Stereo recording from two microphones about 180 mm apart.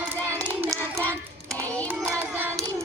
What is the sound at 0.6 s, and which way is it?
Hands, 15° right (ahead or behind).